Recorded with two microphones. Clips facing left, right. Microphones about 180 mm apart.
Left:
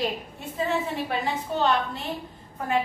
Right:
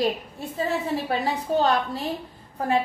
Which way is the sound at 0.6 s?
35° right (ahead or behind).